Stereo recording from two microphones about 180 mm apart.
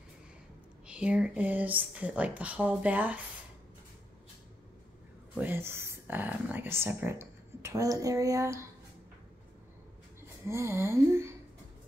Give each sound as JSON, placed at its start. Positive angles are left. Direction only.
{"t": 0.8, "sound": "speech", "side_deg": -5}
{"t": 5.3, "sound": "speech", "side_deg": -10}
{"t": 10.4, "sound": "speech", "side_deg": -15}